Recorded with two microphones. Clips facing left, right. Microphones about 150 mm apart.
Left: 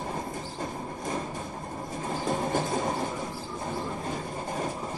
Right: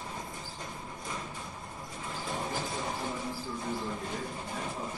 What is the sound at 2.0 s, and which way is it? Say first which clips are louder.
Train: left 7 dB; 45° left (ahead or behind).